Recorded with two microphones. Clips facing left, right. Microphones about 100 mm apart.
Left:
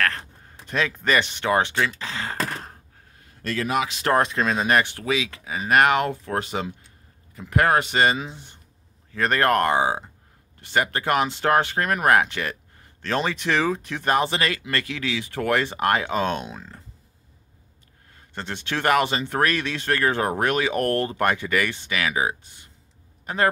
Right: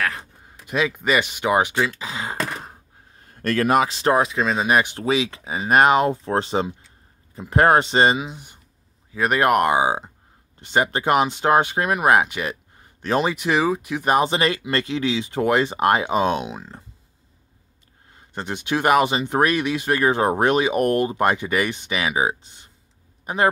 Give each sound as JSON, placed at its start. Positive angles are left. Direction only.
{"t": 0.0, "sound": "a sound", "side_deg": -10}
{"t": 3.2, "sound": "a sound", "side_deg": -50}
{"t": 4.1, "sound": "speech", "side_deg": -5}
{"t": 4.6, "sound": "speech", "side_deg": -15}
{"t": 5.0, "sound": "speech", "side_deg": -30}
{"t": 8.2, "sound": "speech", "side_deg": -15}
{"t": 18.1, "sound": "speech", "side_deg": -15}